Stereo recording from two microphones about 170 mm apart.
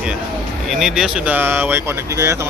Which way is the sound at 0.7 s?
Centre (ahead or behind).